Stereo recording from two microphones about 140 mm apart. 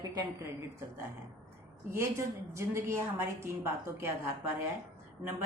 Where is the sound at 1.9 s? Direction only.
20° right (ahead or behind).